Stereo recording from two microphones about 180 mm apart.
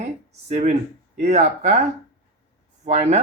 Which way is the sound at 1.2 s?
40° right (ahead or behind).